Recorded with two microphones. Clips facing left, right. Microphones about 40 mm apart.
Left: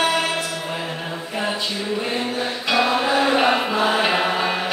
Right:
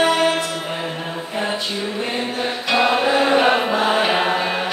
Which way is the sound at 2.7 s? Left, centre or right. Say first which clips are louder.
Right 2 dB; centre.